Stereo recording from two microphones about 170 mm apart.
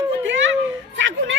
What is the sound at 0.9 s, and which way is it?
Speech, 90° right.